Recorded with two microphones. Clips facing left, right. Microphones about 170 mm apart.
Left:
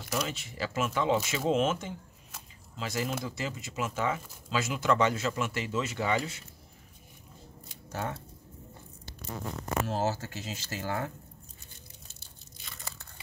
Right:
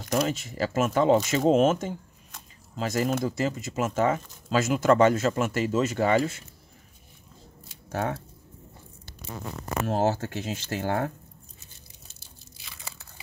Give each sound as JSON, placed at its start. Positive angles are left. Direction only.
{"t": 0.1, "sound": "speech", "side_deg": -45}
{"t": 7.9, "sound": "speech", "side_deg": -65}
{"t": 9.8, "sound": "speech", "side_deg": -55}
{"t": 12.6, "sound": "crunch", "side_deg": 0}